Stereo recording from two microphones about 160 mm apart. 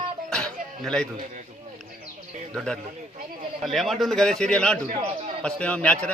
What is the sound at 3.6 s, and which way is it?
A man's voice, centre (ahead or behind).